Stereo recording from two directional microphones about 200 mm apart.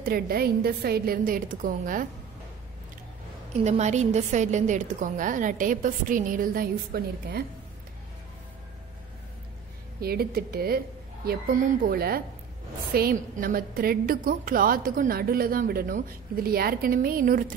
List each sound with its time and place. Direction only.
0.0 s a woman's voice: 50° right (ahead or behind)
3.6 s a woman's voice: 35° right (ahead or behind)
9.9 s a woman's voice: 50° right (ahead or behind)